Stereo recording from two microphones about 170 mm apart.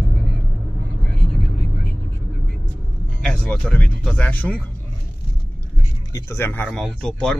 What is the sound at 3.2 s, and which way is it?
Speech, 5° left (ahead or behind).